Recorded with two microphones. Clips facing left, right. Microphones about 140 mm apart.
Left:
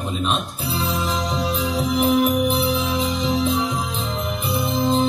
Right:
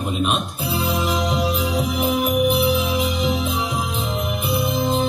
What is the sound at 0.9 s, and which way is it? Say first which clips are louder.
Music: right 2 dB; 10° right (ahead or behind).